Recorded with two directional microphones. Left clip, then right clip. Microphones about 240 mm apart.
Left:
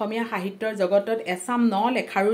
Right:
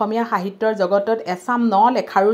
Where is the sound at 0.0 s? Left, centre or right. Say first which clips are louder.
Right 7 dB; centre.